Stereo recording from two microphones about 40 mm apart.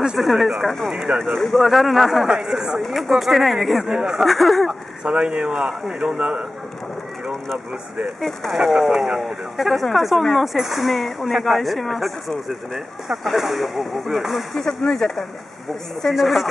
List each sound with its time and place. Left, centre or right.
0.2 s speech: centre
1.2 s speech: centre
2.2 s speech: centre
2.8 s speech: centre
3.9 s speech: centre
4.2 s speech: centre
4.6 s speech: right
5.5 s speech: centre
6.1 s speech: right
8.2 s speech: centre
8.5 s speech: centre
9.6 s speech: centre
14.6 s speech: centre
16.1 s speech: centre